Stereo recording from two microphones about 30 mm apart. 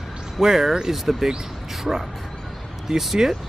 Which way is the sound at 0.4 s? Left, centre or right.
Centre.